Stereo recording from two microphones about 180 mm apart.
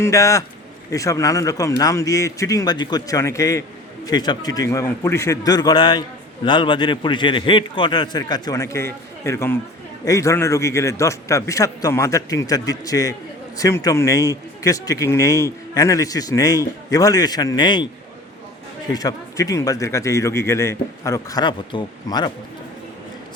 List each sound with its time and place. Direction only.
0.0 s a man's voice: 15° left (ahead or behind)
18.9 s speech: 20° left (ahead or behind)